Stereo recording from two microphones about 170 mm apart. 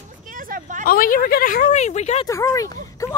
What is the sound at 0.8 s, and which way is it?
Speech, 55° left (ahead or behind).